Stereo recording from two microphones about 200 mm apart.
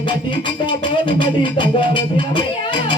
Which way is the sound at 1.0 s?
25° left (ahead or behind).